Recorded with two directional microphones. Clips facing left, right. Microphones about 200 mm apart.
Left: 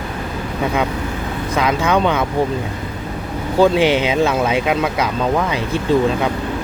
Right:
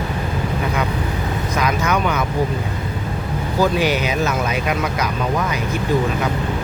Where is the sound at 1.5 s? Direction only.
25° left (ahead or behind).